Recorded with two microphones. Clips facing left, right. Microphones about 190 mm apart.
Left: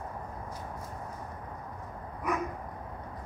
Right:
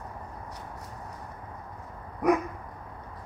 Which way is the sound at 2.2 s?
70° right (ahead or behind).